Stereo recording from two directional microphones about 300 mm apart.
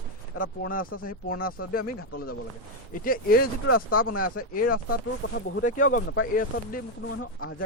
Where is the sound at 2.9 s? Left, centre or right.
Left.